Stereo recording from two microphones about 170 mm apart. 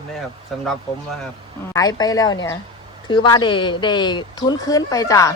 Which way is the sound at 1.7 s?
20° left (ahead or behind).